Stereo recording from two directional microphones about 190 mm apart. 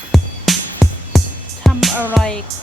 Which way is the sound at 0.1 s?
Centre (ahead or behind).